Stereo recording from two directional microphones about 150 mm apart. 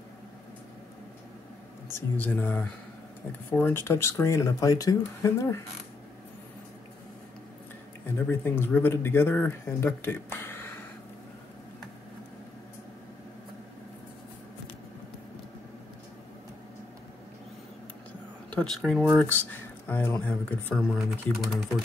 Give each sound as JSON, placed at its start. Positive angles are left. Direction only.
{"t": 1.9, "sound": "speech", "side_deg": 15}
{"t": 8.3, "sound": "speech", "side_deg": 15}
{"t": 18.5, "sound": "a sound", "side_deg": 10}
{"t": 18.8, "sound": "speech", "side_deg": -5}
{"t": 19.2, "sound": "speech", "side_deg": 10}